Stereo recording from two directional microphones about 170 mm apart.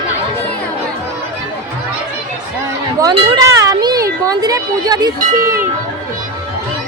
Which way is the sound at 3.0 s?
20° right (ahead or behind).